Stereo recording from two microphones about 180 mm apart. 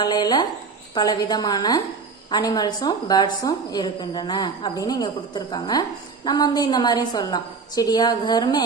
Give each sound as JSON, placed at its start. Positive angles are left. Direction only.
{"t": 0.0, "sound": "a woman's voice", "side_deg": 20}